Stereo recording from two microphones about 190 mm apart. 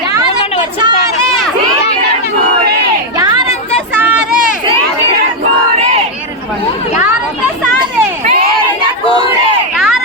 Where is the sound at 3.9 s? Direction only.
5° right (ahead or behind).